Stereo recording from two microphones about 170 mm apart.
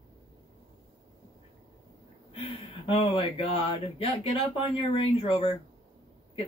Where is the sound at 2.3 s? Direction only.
35° left (ahead or behind).